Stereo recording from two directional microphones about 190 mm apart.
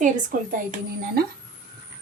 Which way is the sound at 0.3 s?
45° right (ahead or behind).